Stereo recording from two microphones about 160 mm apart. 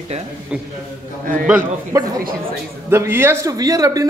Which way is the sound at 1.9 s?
20° right (ahead or behind).